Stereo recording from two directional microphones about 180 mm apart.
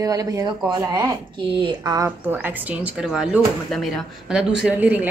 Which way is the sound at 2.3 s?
10° right (ahead or behind).